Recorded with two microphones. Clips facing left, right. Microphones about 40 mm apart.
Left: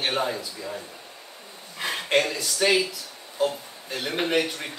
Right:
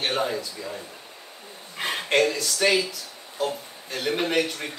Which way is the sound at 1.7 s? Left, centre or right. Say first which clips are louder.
Right 1 dB; right.